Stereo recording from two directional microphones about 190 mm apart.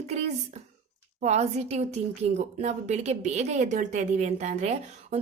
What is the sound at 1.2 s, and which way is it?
A woman's voice, 35° right (ahead or behind).